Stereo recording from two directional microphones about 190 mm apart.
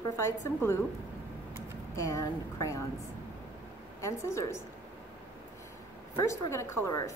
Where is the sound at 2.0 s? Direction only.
15° left (ahead or behind).